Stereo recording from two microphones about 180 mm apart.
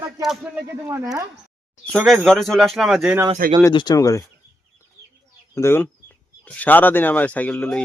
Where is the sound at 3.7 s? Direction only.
25° left (ahead or behind).